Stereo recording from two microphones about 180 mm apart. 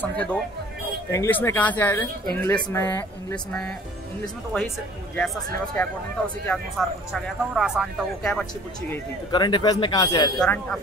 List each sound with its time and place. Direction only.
0.0 s speech: 5° left (ahead or behind)
5.8 s speech: 10° left (ahead or behind)
9.3 s speech: 25° left (ahead or behind)
10.4 s speech: 5° left (ahead or behind)